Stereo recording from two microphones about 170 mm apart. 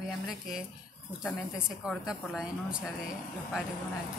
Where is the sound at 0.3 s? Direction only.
Centre (ahead or behind).